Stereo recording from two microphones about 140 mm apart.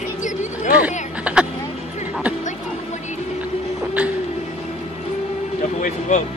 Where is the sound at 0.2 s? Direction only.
60° left (ahead or behind).